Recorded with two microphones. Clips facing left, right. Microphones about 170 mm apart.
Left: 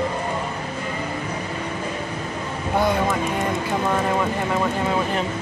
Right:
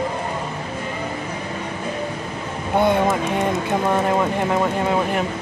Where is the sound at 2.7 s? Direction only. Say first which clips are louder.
Right 3 dB; 25° right (ahead or behind).